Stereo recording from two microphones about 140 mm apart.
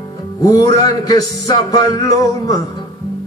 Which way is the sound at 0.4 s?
25° left (ahead or behind).